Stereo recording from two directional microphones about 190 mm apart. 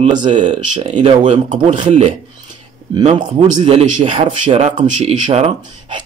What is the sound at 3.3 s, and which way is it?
Speech, 35° right (ahead or behind).